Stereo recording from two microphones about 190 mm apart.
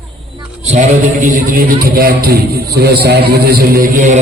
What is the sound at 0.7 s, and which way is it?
A man's voice, 40° right (ahead or behind).